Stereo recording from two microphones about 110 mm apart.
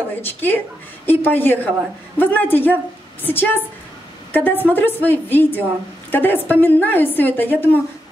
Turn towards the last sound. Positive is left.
turn(degrees=15)  # may be behind; listen again after turning